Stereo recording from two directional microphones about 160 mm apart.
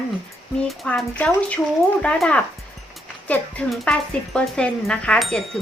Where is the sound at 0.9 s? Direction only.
10° left (ahead or behind).